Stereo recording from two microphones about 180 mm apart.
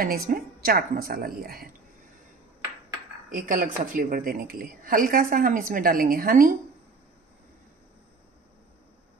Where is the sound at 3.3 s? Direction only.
50° right (ahead or behind).